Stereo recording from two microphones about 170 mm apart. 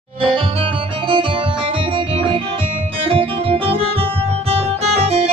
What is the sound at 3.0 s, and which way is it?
Guitar, 30° right (ahead or behind).